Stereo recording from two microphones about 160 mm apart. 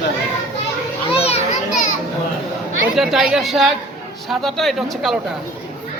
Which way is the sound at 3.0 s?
5° right (ahead or behind).